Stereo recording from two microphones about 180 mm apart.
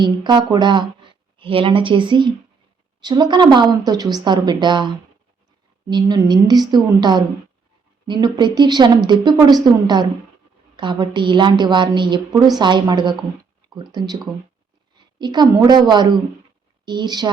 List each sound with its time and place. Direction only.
0.0 s a woman's voice: 25° right (ahead or behind)
15.2 s a woman's voice: 25° right (ahead or behind)